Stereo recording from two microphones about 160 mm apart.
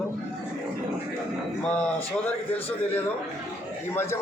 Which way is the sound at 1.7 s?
10° left (ahead or behind).